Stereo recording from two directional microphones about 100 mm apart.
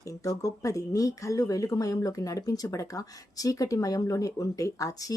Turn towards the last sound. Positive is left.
turn(degrees=35)  # may be behind; listen again after turning